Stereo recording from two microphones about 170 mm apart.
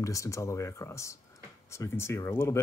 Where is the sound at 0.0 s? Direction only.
20° left (ahead or behind).